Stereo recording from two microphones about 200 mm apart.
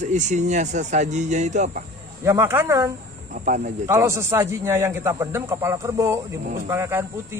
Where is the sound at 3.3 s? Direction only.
40° right (ahead or behind).